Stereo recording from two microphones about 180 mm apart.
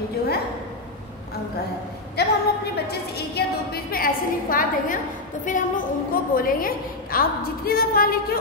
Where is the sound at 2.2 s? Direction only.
65° left (ahead or behind).